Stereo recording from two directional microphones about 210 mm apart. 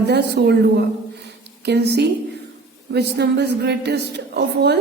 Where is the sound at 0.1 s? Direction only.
50° right (ahead or behind).